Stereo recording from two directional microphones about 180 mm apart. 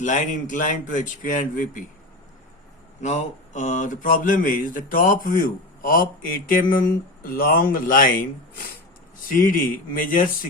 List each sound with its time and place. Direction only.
0.0 s speech: 45° left (ahead or behind)
3.0 s speech: 40° left (ahead or behind)